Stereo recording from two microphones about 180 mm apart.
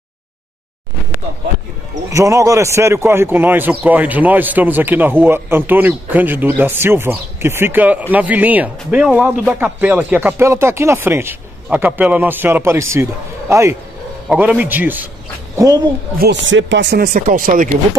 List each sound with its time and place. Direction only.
2.0 s speech: 15° right (ahead or behind)
15.5 s speech: 20° right (ahead or behind)
16.2 s speech: 80° right; by 17.7 s 45° right (ahead or behind)